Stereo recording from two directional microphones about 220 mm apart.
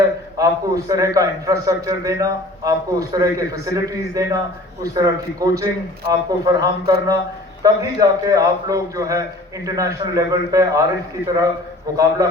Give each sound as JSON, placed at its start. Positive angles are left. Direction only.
{"t": 0.3, "sound": "a man's voice", "side_deg": -15}
{"t": 11.9, "sound": "a man's voice", "side_deg": -15}